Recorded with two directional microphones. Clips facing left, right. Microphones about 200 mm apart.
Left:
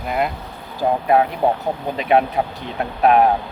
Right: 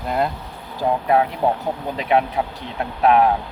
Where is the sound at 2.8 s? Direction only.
15° left (ahead or behind).